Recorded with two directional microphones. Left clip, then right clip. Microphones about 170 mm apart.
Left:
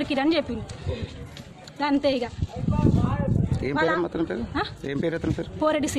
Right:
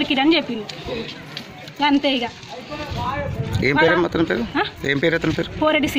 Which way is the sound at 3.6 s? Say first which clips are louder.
Right 8 dB; centre (ahead or behind).